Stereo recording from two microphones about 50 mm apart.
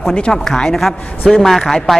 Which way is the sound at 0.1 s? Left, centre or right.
Centre.